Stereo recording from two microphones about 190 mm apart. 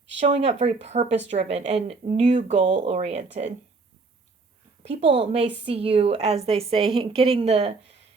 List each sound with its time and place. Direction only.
0.2 s a woman's voice: 35° right (ahead or behind)
4.9 s a woman's voice: 35° right (ahead or behind)